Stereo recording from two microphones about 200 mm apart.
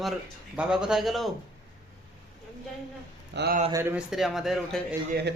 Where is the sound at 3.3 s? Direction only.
50° right (ahead or behind).